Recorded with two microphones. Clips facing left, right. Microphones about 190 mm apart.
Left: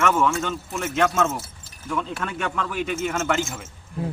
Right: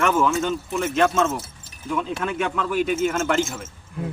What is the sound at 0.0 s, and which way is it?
A man's voice, centre (ahead or behind).